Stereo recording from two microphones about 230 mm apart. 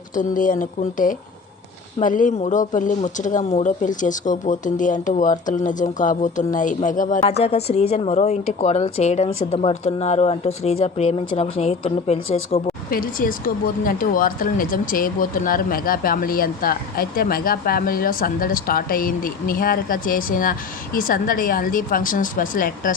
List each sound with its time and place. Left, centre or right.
0.1 s a woman's voice: left
12.9 s speech: left